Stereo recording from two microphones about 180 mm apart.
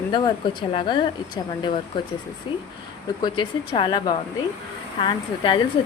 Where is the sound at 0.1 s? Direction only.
30° left (ahead or behind).